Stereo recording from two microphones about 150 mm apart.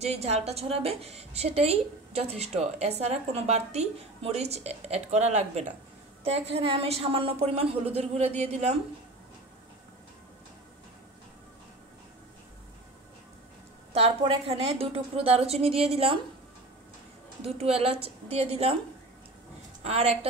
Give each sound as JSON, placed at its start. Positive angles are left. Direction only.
{"t": 0.0, "sound": "a woman's voice", "side_deg": -45}
{"t": 13.9, "sound": "a woman's voice", "side_deg": -40}
{"t": 17.4, "sound": "a woman's voice", "side_deg": -40}
{"t": 19.8, "sound": "a woman's voice", "side_deg": -45}